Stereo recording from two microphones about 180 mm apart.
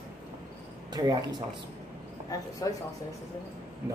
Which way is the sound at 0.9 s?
20° right (ahead or behind).